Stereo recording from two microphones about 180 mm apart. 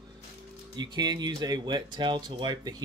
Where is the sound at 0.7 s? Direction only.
25° right (ahead or behind).